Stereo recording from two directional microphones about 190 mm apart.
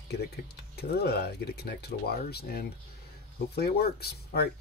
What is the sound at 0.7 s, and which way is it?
Speech, 55° left (ahead or behind).